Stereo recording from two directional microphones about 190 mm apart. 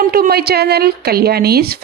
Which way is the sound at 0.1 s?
55° right (ahead or behind).